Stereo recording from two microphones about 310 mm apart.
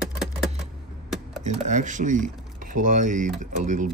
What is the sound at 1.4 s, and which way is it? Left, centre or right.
Speech, right.